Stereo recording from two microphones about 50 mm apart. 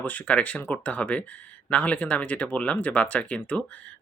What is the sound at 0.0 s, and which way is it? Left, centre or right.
Speech, left.